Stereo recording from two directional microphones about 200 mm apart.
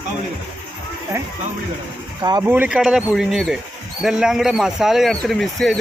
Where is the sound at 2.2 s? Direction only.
20° right (ahead or behind).